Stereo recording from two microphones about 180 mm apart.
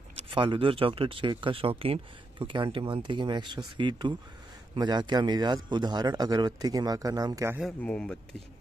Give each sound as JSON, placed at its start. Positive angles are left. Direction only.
{"t": 0.2, "sound": "speech", "side_deg": -30}
{"t": 7.6, "sound": "speech", "side_deg": 5}